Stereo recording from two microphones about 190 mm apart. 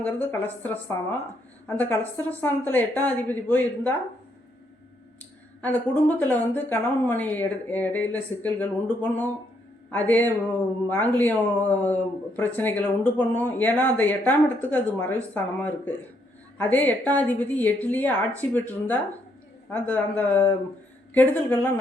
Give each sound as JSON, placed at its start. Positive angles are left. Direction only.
{"t": 0.0, "sound": "speech", "side_deg": 10}
{"t": 5.6, "sound": "speech", "side_deg": 10}